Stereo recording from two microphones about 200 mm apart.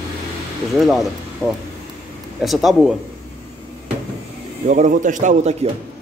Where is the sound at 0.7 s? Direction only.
Centre (ahead or behind).